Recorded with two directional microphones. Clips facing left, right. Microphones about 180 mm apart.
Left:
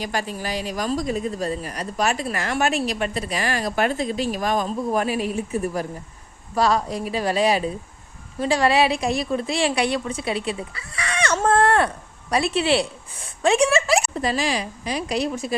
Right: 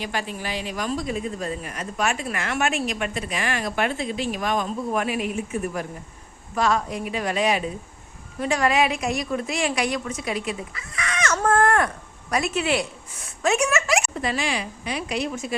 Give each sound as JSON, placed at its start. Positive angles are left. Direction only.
{"t": 0.0, "sound": "speech", "side_deg": 40}